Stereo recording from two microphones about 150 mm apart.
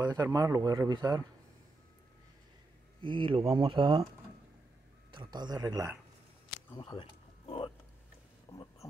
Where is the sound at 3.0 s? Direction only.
35° right (ahead or behind).